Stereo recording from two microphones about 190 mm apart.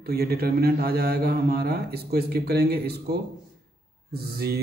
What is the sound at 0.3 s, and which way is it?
Speech, 55° right (ahead or behind).